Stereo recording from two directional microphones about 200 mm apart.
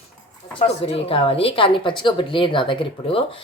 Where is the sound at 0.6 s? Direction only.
25° left (ahead or behind).